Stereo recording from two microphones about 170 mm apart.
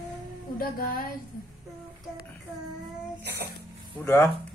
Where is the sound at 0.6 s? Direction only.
55° left (ahead or behind).